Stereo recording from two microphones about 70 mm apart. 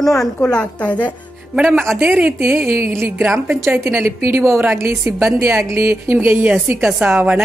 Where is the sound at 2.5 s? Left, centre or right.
Right.